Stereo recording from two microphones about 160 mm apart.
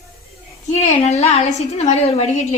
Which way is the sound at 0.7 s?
45° left (ahead or behind).